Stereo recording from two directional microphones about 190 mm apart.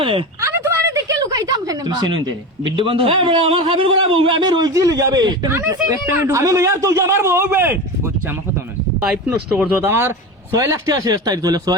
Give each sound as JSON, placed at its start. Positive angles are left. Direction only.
{"t": 0.0, "sound": "speech", "side_deg": -30}
{"t": 0.5, "sound": "speech", "side_deg": -15}